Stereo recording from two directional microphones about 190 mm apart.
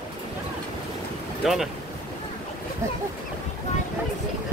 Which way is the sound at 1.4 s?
Centre (ahead or behind).